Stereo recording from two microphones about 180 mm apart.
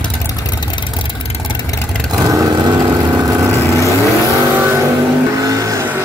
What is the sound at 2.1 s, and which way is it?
Vehicle, 20° right (ahead or behind).